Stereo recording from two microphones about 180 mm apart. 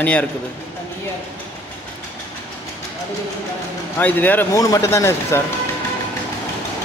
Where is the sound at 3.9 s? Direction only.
10° left (ahead or behind).